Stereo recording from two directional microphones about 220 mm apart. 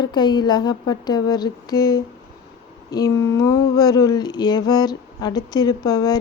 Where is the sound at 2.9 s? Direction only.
15° left (ahead or behind).